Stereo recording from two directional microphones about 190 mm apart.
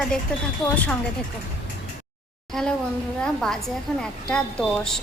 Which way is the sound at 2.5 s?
Centre (ahead or behind).